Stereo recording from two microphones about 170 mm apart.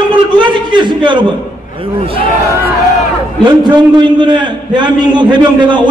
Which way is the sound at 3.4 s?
25° right (ahead or behind).